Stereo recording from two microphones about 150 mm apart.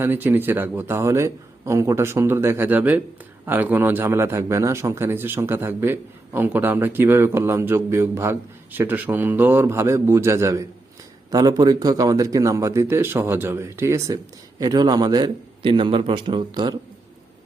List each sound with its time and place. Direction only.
0.0 s a man's voice: 15° right (ahead or behind); by 16.7 s 30° right (ahead or behind)